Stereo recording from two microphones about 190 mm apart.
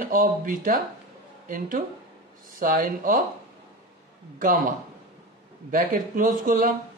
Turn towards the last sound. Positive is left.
turn(degrees=-45)  # may be behind; listen again after turning